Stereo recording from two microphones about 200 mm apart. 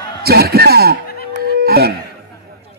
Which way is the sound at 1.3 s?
50° right (ahead or behind).